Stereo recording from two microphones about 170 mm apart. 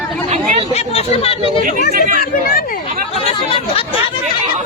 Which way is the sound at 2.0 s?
55° right (ahead or behind).